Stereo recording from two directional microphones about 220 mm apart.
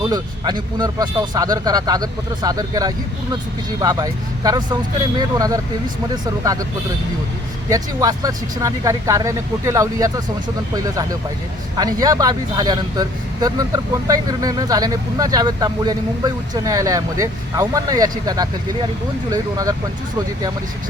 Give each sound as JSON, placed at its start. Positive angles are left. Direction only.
{"t": 0.0, "sound": "speech", "side_deg": -20}
{"t": 6.4, "sound": "speech", "side_deg": -15}
{"t": 7.7, "sound": "speech", "side_deg": -15}